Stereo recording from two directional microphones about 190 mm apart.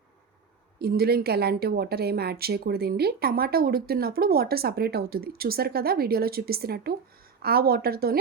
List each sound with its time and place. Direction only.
0.8 s speech: 55° right (ahead or behind)